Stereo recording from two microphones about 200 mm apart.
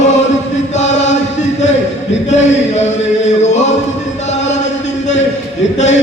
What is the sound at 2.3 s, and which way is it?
Chant, 35° left (ahead or behind).